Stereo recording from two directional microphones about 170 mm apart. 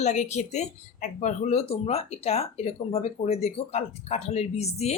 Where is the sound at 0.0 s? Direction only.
45° left (ahead or behind).